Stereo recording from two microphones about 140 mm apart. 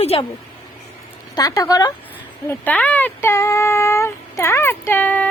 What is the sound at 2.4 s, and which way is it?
Speech, 10° left (ahead or behind).